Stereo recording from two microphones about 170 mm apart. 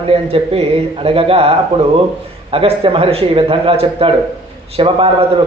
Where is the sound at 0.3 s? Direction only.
35° right (ahead or behind).